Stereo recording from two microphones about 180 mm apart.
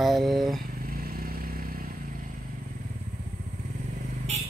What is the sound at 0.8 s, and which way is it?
Vehicle, 55° right (ahead or behind).